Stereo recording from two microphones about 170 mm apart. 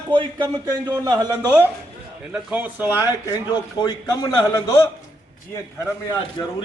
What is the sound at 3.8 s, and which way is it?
A man's voice, 20° left (ahead or behind).